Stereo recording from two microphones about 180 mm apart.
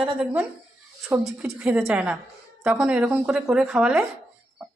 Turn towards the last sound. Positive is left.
turn(degrees=-5)  # may be behind; listen again after turning